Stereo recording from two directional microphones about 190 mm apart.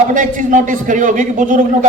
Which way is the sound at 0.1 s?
45° right (ahead or behind).